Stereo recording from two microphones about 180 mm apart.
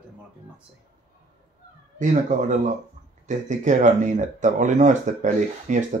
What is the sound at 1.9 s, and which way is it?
Speech, 45° right (ahead or behind).